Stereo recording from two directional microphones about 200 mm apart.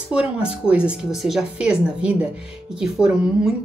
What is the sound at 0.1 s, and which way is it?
A woman's voice, 5° right (ahead or behind).